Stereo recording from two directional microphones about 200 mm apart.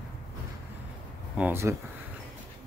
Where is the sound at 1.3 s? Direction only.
10° right (ahead or behind).